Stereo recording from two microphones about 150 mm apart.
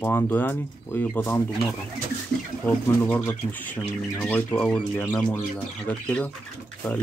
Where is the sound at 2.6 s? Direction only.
15° left (ahead or behind).